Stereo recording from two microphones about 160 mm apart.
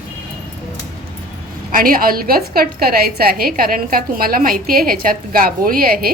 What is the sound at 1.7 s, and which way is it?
A woman's voice, 65° right (ahead or behind).